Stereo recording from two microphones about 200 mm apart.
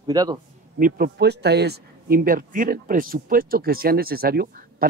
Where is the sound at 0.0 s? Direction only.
20° right (ahead or behind).